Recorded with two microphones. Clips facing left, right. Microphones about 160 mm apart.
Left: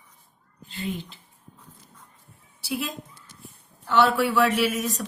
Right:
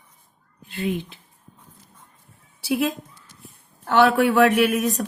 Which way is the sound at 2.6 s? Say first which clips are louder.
Right 8 dB; 60° right (ahead or behind).